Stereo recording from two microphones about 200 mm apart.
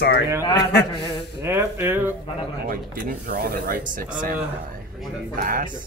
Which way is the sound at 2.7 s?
45° right (ahead or behind).